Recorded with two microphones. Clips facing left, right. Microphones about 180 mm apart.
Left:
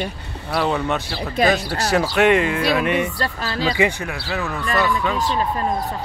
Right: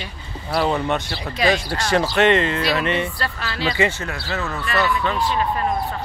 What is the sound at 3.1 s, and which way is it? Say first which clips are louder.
Speech: left 3 dB; 35° left (ahead or behind).